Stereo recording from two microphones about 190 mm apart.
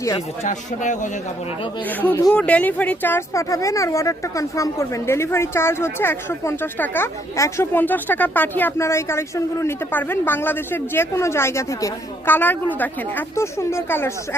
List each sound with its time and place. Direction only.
0.4 s speech: 40° left (ahead or behind)
2.0 s speech: 10° left (ahead or behind)